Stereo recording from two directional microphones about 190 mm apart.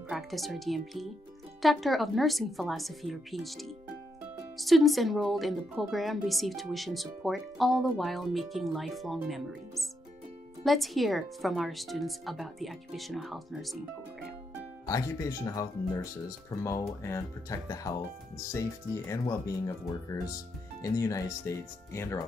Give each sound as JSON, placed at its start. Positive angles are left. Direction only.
{"t": 0.1, "sound": "speech", "side_deg": 0}
{"t": 14.9, "sound": "speech", "side_deg": 20}